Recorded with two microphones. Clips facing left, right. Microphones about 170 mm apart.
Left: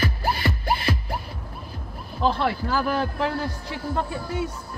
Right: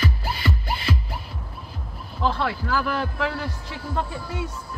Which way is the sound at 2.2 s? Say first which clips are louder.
Left 2 dB; 25° left (ahead or behind).